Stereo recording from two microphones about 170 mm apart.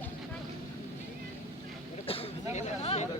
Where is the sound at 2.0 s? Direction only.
35° left (ahead or behind).